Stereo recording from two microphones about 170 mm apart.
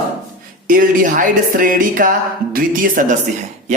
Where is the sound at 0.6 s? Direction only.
55° right (ahead or behind).